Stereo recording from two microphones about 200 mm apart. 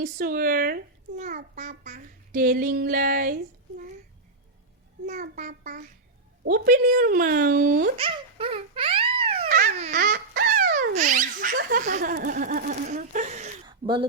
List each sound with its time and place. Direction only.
0.0 s a child's voice: 45° right (ahead or behind)
5.0 s a child's voice: 40° right (ahead or behind)
7.9 s wail: 25° right (ahead or behind)
9.9 s a sound: 50° right (ahead or behind)
10.9 s baby laughter: 40° right (ahead or behind)
11.5 s a sound: 45° right (ahead or behind); by 14.1 s 25° right (ahead or behind)